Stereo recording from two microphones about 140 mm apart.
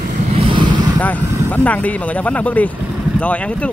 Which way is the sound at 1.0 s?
10° left (ahead or behind).